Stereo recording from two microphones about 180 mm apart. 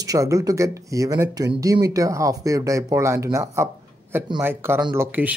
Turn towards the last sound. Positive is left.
turn(degrees=-10)  # may be behind; listen again after turning